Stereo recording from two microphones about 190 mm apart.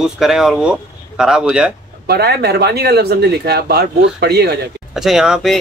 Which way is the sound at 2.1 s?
60° right (ahead or behind).